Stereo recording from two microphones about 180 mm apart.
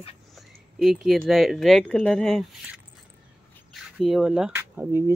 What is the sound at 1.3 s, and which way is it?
Speech, centre (ahead or behind).